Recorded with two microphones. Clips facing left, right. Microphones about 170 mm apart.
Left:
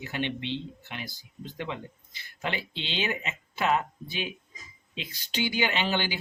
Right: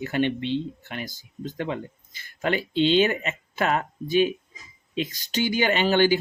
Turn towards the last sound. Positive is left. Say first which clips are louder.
# right 9 dB
turn(degrees=-45)  # may be behind; listen again after turning